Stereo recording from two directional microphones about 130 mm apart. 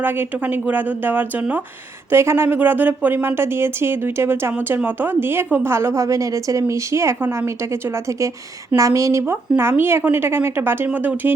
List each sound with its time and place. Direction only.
0.0 s a woman's voice: 15° right (ahead or behind)